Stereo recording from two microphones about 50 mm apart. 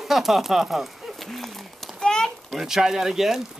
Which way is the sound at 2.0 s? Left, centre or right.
Centre.